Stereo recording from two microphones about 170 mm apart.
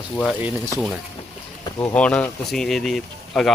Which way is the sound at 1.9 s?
5° left (ahead or behind).